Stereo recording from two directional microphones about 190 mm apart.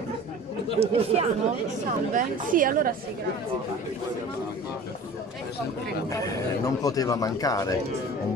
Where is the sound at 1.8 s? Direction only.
45° right (ahead or behind).